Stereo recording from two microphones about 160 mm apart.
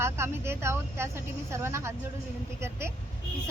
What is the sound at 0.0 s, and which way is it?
A woman's voice, 15° right (ahead or behind).